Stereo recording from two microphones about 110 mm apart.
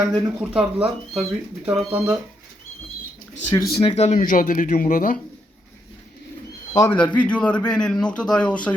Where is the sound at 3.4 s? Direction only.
25° left (ahead or behind).